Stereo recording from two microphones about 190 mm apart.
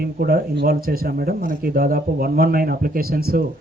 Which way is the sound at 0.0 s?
55° right (ahead or behind).